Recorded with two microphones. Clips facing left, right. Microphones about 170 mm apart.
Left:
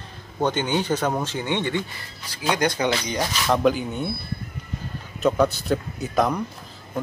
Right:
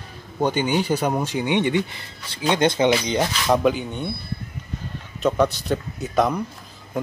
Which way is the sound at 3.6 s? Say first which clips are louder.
Even; centre (ahead or behind).